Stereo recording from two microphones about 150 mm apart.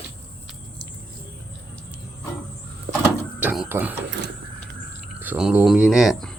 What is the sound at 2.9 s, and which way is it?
Vehicle, 90° right.